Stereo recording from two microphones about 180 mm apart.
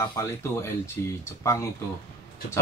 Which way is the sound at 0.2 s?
15° left (ahead or behind).